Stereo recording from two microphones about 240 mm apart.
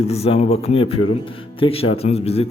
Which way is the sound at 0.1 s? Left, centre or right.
Left.